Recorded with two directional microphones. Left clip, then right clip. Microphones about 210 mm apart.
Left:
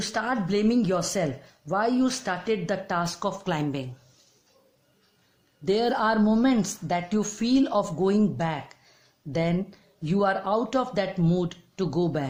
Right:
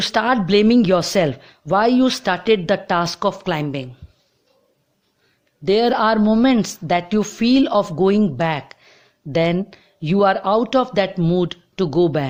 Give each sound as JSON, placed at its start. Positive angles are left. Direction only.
{"t": 0.0, "sound": "speech", "side_deg": -35}
{"t": 5.6, "sound": "a woman's voice", "side_deg": -30}